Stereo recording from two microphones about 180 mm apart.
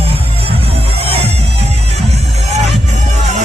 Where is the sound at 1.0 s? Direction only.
35° right (ahead or behind).